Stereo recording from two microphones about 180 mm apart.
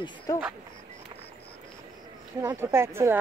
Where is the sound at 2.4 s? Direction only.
15° right (ahead or behind).